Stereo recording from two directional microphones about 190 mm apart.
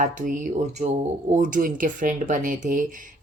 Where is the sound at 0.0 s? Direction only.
45° right (ahead or behind).